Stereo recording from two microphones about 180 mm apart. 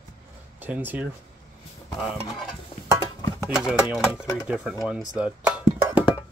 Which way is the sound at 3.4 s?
5° right (ahead or behind).